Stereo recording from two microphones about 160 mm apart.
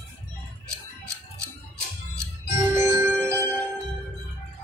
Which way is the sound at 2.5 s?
15° right (ahead or behind).